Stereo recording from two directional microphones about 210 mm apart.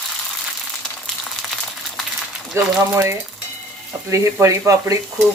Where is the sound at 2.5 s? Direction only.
15° right (ahead or behind).